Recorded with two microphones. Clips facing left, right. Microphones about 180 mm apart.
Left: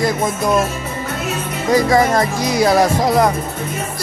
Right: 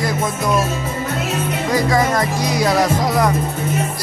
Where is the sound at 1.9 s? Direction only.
30° left (ahead or behind).